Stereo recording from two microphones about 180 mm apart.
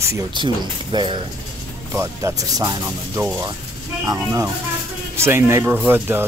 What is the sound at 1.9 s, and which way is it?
Speech, 15° right (ahead or behind).